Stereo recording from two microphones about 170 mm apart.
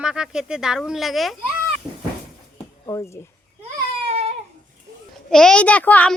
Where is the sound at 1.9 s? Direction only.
5° right (ahead or behind).